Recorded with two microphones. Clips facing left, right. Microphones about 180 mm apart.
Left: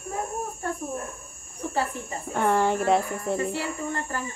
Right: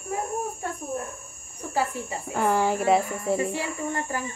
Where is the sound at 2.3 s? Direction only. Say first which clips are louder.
Left 1 dB; centre (ahead or behind).